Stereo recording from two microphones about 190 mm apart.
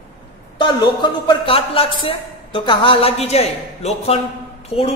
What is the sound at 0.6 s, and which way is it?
A man's voice, 25° left (ahead or behind).